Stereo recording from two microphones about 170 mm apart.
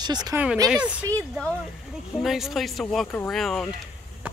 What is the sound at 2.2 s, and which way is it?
Speech, centre (ahead or behind).